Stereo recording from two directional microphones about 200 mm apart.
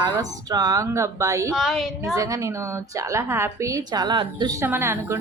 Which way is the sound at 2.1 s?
15° right (ahead or behind).